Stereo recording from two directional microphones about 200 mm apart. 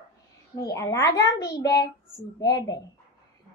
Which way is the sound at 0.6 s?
15° left (ahead or behind).